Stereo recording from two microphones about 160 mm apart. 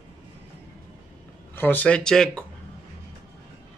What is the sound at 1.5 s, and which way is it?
Speech, 10° left (ahead or behind).